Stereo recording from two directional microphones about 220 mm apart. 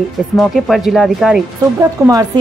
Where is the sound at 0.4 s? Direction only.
Centre (ahead or behind).